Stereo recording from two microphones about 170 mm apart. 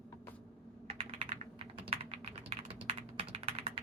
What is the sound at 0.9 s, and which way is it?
Typing, 35° right (ahead or behind).